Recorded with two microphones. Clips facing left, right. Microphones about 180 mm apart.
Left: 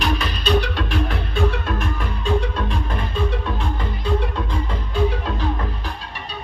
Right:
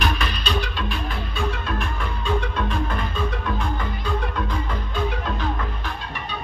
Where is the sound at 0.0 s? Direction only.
30° left (ahead or behind).